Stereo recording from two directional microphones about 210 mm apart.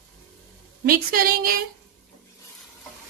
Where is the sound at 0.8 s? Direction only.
45° right (ahead or behind).